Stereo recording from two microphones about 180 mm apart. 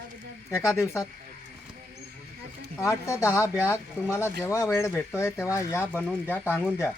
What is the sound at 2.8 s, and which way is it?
Speech, 15° left (ahead or behind).